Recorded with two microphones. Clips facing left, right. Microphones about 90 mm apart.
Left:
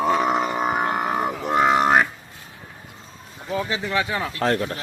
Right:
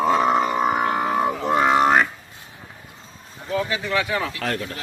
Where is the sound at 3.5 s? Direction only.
20° left (ahead or behind).